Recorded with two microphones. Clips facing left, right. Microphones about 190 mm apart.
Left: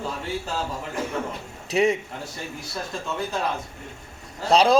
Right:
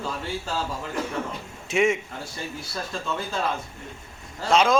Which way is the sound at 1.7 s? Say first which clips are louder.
Left 1 dB; 35° left (ahead or behind).